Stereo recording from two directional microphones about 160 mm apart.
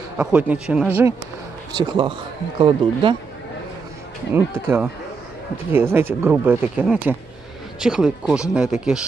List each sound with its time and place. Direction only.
0.2 s speech: 10° right (ahead or behind)
1.7 s a man's voice: 25° right (ahead or behind)
4.3 s speech: 15° right (ahead or behind)